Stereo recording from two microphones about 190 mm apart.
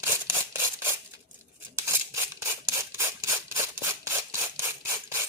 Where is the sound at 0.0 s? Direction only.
15° right (ahead or behind).